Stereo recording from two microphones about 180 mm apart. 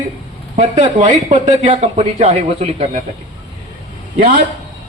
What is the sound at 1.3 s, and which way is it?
A man's voice, 30° right (ahead or behind).